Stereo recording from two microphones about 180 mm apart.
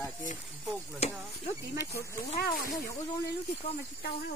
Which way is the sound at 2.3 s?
55° left (ahead or behind).